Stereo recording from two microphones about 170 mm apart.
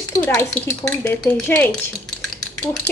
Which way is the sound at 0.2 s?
10° left (ahead or behind).